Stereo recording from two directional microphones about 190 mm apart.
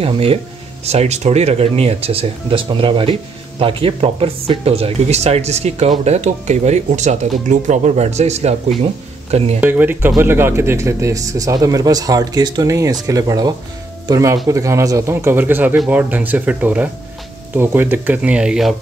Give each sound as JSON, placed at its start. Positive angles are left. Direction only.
{"t": 0.0, "sound": "speech", "side_deg": -30}
{"t": 9.6, "sound": "speech", "side_deg": -10}